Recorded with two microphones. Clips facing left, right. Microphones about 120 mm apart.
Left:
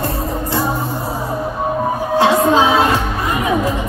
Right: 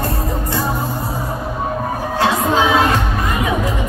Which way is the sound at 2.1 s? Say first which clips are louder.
Left 4 dB; 25° left (ahead or behind).